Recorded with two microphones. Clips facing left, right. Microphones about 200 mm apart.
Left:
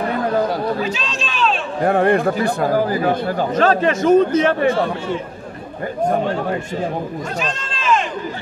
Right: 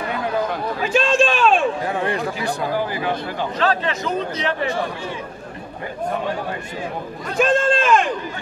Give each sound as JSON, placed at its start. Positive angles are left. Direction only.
{"t": 0.2, "sound": "chatter", "side_deg": 40}
{"t": 0.8, "sound": "a sound", "side_deg": -50}
{"t": 1.8, "sound": "speech", "side_deg": 55}
{"t": 7.3, "sound": "run", "side_deg": -55}